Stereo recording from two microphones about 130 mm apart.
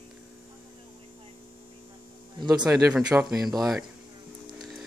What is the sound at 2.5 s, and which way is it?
Speech, 5° right (ahead or behind).